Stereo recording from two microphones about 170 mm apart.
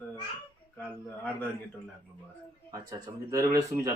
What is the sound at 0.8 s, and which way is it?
Speech, 5° left (ahead or behind).